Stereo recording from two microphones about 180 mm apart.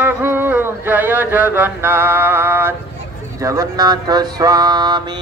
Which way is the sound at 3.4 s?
20° right (ahead or behind).